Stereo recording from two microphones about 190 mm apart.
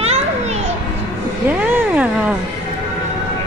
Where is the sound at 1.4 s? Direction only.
10° right (ahead or behind).